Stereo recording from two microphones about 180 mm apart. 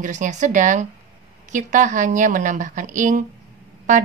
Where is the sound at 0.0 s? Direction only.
45° right (ahead or behind).